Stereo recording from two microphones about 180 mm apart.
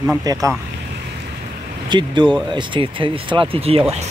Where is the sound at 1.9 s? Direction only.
25° right (ahead or behind).